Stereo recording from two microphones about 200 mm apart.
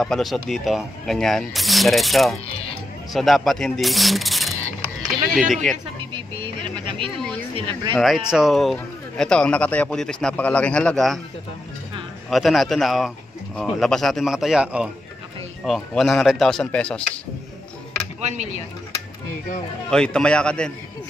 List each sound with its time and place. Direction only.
0.0 s a man's voice: centre (ahead or behind)
2.4 s speech: 30° left (ahead or behind)
3.1 s speech: centre (ahead or behind)
4.8 s a sound: centre (ahead or behind)
5.5 s a man's voice: centre (ahead or behind)
6.1 s vehicle: 25° right (ahead or behind)
7.5 s speech: 25° right (ahead or behind)
7.9 s a man's voice: centre (ahead or behind)
12.3 s a man's voice: centre (ahead or behind)
18.2 s speech: 35° right (ahead or behind)
19.9 s a man's voice: 5° left (ahead or behind)